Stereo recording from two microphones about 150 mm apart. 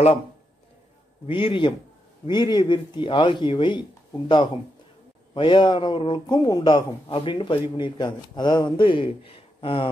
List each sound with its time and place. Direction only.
1.2 s speech: 35° left (ahead or behind)